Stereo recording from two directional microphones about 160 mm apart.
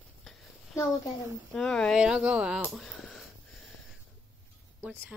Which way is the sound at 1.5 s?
5° left (ahead or behind).